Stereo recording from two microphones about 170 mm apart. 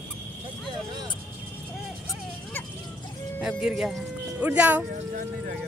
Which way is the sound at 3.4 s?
5° right (ahead or behind).